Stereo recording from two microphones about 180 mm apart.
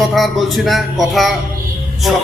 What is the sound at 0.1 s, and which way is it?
A man's voice, centre (ahead or behind).